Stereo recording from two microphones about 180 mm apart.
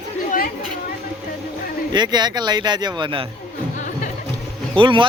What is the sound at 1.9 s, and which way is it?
Speech, 25° right (ahead or behind).